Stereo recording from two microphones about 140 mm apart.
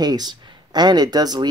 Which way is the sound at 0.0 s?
30° right (ahead or behind).